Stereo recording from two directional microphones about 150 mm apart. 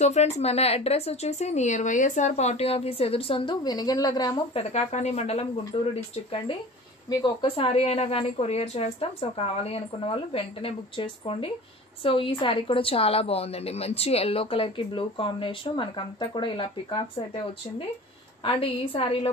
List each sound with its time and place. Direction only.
0.0 s speech: 50° left (ahead or behind); by 4.4 s 25° left (ahead or behind)
4.6 s a woman's voice: 45° left (ahead or behind)